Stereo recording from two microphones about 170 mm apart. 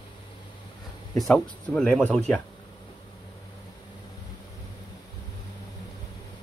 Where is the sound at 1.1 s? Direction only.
5° left (ahead or behind).